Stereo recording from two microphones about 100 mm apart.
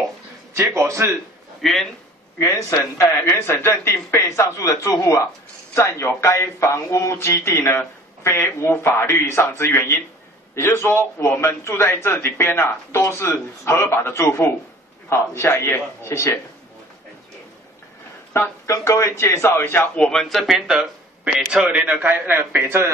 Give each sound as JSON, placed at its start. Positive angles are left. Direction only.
{"t": 0.6, "sound": "a man's voice", "side_deg": -30}
{"t": 1.6, "sound": "speech", "side_deg": 0}
{"t": 2.3, "sound": "speech", "side_deg": 30}
{"t": 18.3, "sound": "speech", "side_deg": 30}
{"t": 20.1, "sound": "a man's voice", "side_deg": 5}